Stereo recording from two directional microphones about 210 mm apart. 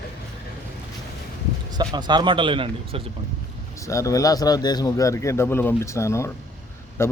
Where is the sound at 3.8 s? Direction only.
15° left (ahead or behind).